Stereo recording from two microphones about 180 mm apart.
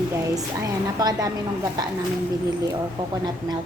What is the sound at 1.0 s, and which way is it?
Speech, 20° right (ahead or behind).